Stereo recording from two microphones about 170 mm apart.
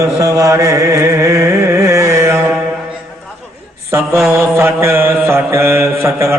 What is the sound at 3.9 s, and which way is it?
Speech, 15° right (ahead or behind).